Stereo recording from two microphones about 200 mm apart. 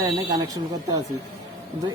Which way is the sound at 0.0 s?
20° right (ahead or behind).